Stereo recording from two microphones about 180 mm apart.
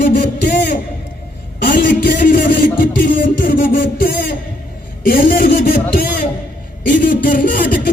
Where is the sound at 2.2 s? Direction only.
50° left (ahead or behind).